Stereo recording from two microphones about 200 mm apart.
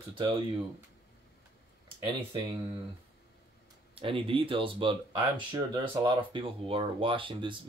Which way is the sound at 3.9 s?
25° right (ahead or behind).